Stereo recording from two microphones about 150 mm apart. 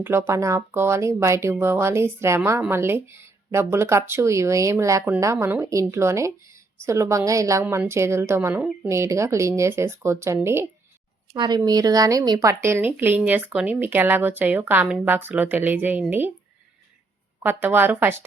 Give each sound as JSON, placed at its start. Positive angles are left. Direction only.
{"t": 0.0, "sound": "a woman's voice", "side_deg": -15}
{"t": 11.3, "sound": "a woman's voice", "side_deg": -30}
{"t": 17.4, "sound": "a woman's voice", "side_deg": -15}